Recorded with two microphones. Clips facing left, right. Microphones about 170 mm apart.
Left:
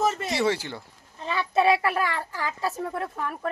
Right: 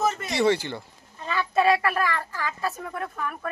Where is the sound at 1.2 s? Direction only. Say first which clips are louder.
Even; 20° left (ahead or behind).